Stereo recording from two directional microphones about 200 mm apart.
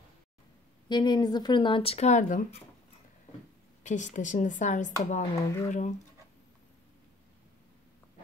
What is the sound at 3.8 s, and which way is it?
A woman's voice, 40° left (ahead or behind).